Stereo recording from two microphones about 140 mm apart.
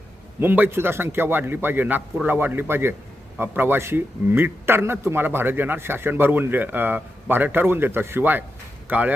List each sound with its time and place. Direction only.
0.3 s speech: 15° right (ahead or behind)